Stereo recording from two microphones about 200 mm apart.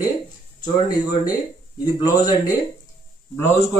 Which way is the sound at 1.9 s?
20° left (ahead or behind).